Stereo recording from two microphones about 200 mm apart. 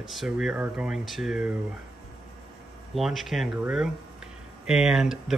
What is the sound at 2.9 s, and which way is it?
Speech, centre (ahead or behind).